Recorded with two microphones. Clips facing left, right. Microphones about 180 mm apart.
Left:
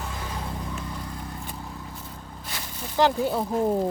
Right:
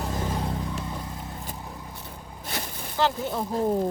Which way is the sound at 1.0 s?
20° right (ahead or behind).